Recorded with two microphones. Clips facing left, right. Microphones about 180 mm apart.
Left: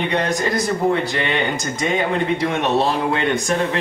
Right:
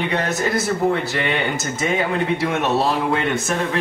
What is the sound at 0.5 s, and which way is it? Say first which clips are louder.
Speech: even; 5° right (ahead or behind).